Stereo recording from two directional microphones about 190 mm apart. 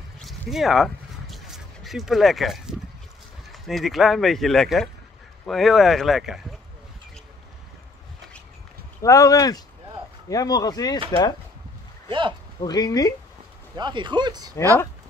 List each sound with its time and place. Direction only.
0.2 s a sound: centre (ahead or behind)
3.6 s speech: centre (ahead or behind)
9.0 s speech: 15° left (ahead or behind)
12.1 s speech: 25° right (ahead or behind)
12.5 s speech: 20° left (ahead or behind)
13.7 s speech: 25° right (ahead or behind)